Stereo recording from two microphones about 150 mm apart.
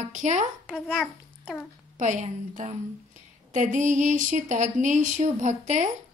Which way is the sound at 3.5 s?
55° right (ahead or behind).